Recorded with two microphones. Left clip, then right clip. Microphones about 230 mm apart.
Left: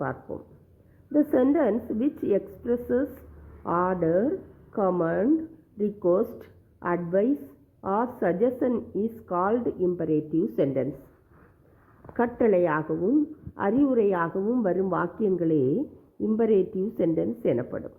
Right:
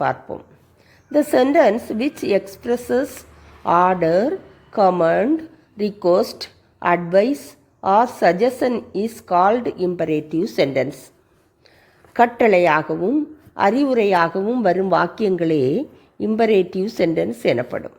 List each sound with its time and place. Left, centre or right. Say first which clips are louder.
0.0 s a woman's voice: right 11 dB; right
12.1 s a woman's voice: right 9 dB; right